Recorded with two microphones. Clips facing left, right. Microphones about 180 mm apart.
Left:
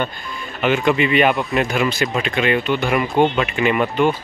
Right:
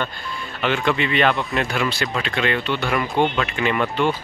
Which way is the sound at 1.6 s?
15° left (ahead or behind).